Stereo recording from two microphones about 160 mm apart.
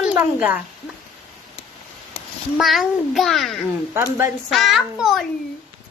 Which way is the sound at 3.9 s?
15° right (ahead or behind).